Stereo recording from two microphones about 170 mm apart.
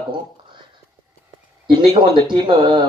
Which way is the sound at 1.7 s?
25° right (ahead or behind).